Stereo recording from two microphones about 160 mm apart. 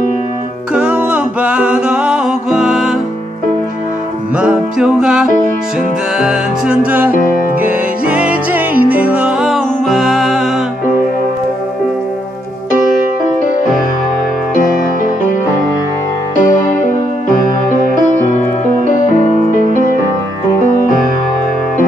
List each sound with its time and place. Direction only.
0.7 s humming: 5° right (ahead or behind)
4.4 s music: 5° right (ahead or behind)
16.3 s music: 55° left (ahead or behind)
19.0 s music: 50° left (ahead or behind)